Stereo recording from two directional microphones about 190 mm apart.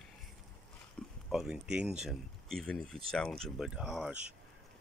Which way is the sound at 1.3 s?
5° right (ahead or behind).